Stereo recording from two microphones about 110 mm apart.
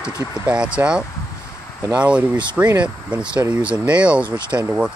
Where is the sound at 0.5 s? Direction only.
10° right (ahead or behind).